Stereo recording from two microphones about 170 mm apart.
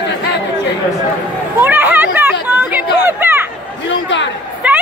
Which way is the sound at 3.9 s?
90° left.